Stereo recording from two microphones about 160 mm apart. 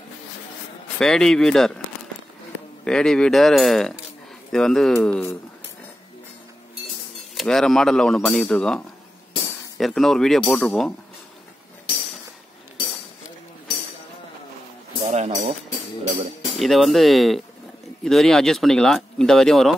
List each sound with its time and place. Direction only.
0.9 s speech: 5° left (ahead or behind)
2.8 s speech: 5° left (ahead or behind)
7.3 s speech: 5° left (ahead or behind)
15.0 s music: 50° right (ahead or behind)
16.5 s speech: centre (ahead or behind)